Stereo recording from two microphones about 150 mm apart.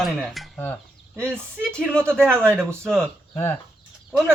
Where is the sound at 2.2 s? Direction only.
15° right (ahead or behind).